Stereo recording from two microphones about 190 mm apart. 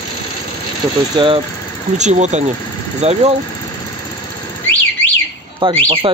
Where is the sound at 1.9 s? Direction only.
35° right (ahead or behind).